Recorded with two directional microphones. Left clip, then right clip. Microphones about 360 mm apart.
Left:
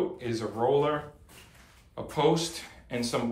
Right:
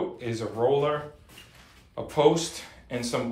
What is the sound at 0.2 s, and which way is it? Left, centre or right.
Speech, centre.